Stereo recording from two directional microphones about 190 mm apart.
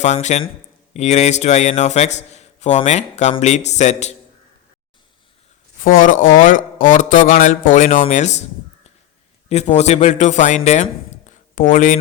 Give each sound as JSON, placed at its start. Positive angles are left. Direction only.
{"t": 0.0, "sound": "a man's voice", "side_deg": 35}
{"t": 5.8, "sound": "a man's voice", "side_deg": 45}
{"t": 11.3, "sound": "a sound", "side_deg": 40}